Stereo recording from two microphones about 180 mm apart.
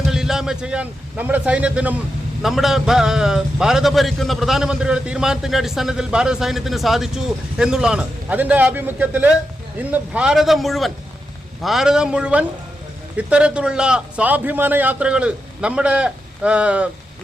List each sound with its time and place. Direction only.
0.1 s a man's voice: 5° right (ahead or behind)